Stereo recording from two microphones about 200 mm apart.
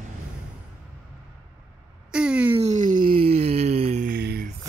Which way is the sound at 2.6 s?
35° right (ahead or behind).